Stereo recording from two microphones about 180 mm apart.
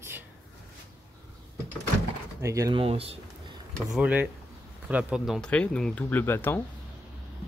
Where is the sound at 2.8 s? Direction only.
35° right (ahead or behind).